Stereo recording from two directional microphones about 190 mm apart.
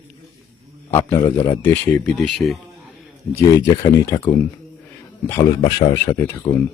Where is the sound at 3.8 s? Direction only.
15° left (ahead or behind).